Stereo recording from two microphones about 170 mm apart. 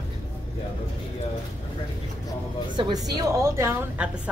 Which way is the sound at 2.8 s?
25° right (ahead or behind).